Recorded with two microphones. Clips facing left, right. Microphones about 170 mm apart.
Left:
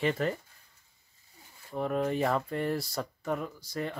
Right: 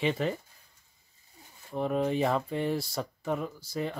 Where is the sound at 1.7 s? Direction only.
10° right (ahead or behind).